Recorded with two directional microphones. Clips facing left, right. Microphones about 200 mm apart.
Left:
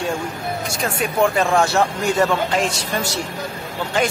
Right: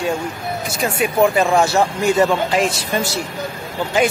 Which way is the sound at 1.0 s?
5° right (ahead or behind).